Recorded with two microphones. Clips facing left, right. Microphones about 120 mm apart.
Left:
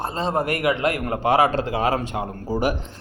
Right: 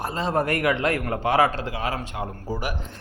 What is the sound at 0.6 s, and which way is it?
Speech, 10° left (ahead or behind).